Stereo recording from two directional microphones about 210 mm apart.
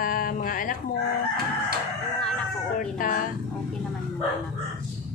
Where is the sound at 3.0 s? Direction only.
40° left (ahead or behind).